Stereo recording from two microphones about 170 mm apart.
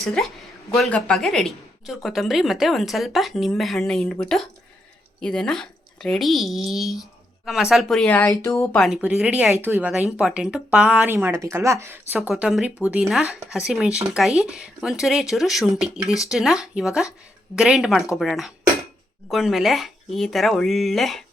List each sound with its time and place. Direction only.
0.0 s a woman's voice: centre (ahead or behind); by 8.7 s 15° left (ahead or behind)
8.7 s speech: centre (ahead or behind); by 12.3 s 15° right (ahead or behind)
12.3 s a woman's voice: 5° right (ahead or behind)